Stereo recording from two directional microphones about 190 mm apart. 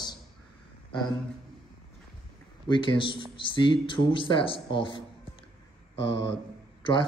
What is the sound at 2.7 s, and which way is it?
Speech, 25° left (ahead or behind).